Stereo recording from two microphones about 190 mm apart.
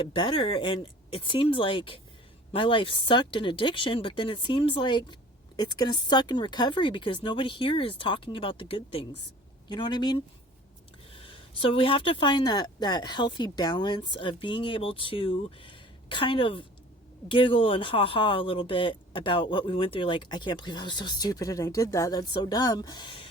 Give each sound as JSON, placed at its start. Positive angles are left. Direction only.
{"t": 0.0, "sound": "speech", "side_deg": 25}